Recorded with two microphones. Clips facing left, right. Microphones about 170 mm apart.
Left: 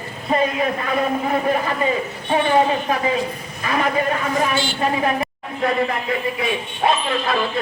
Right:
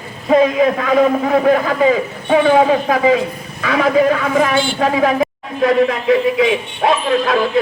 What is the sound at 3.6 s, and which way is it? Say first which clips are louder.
A woman's voice: right 7 dB; 90° right.